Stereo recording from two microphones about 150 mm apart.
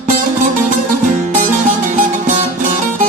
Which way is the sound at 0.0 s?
60° right (ahead or behind).